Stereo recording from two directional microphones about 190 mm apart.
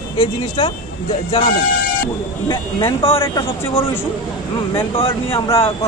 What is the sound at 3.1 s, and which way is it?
Speech, 15° left (ahead or behind).